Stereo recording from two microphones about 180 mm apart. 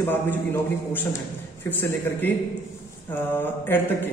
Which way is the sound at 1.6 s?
10° left (ahead or behind).